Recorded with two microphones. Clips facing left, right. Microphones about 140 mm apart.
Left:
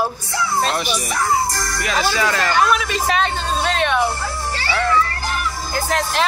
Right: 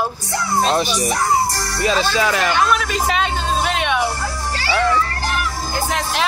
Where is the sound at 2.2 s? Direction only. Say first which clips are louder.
Right 1 dB; 15° right (ahead or behind).